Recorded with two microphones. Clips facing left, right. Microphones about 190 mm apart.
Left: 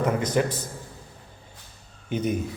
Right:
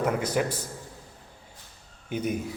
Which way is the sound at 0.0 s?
10° right (ahead or behind).